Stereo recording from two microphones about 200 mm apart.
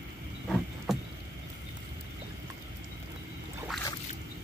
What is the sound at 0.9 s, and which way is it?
Vehicle, centre (ahead or behind).